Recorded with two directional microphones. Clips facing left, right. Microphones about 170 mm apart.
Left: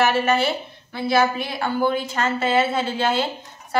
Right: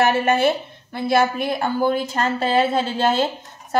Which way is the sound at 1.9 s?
40° right (ahead or behind).